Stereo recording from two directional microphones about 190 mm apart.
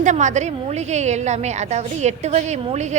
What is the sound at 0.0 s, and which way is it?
A woman's voice, 40° right (ahead or behind).